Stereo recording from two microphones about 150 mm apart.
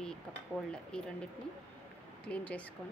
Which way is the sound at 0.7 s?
5° left (ahead or behind).